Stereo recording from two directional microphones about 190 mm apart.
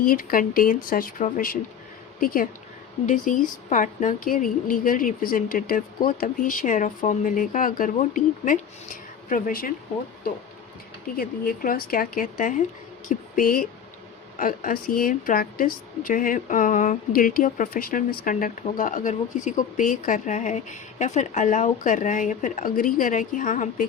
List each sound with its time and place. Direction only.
0.0 s speech: 50° left (ahead or behind)
11.2 s speech: 50° left (ahead or behind)
13.1 s a sound: 45° left (ahead or behind)
14.3 s speech: 45° left (ahead or behind)